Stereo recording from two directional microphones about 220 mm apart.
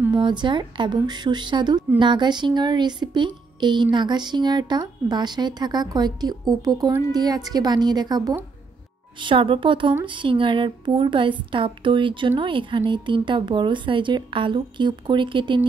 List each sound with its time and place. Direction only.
0.2 s speech: 20° right (ahead or behind)